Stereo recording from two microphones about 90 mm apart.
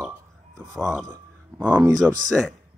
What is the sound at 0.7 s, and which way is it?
Speech, centre (ahead or behind).